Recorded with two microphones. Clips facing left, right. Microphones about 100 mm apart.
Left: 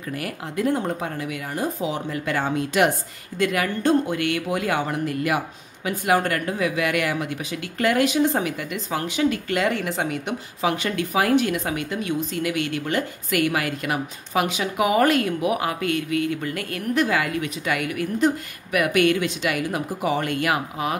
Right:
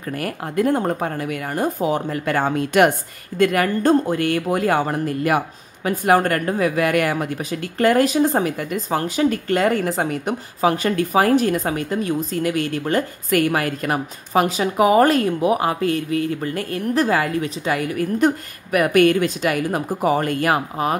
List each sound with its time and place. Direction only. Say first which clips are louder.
0.2 s speech: right 5 dB; 50° right (ahead or behind); by 18.0 s 30° right (ahead or behind)
18.2 s speech: right 1 dB; 45° right (ahead or behind)